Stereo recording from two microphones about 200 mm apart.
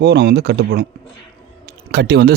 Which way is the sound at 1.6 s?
55° right (ahead or behind).